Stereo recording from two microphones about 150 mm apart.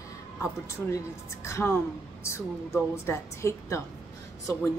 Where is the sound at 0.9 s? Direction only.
20° left (ahead or behind).